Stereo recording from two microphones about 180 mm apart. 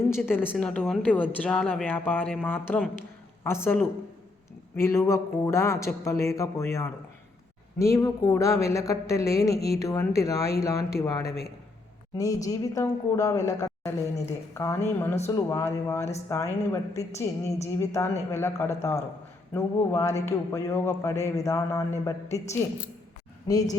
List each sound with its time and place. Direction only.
0.1 s speech: 10° left (ahead or behind)
23.5 s speech: 20° left (ahead or behind)